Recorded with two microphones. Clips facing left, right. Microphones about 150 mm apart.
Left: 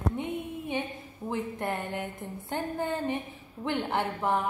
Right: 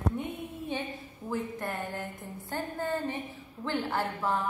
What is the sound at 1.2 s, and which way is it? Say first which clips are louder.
A woman's voice: left 2 dB; 20° left (ahead or behind).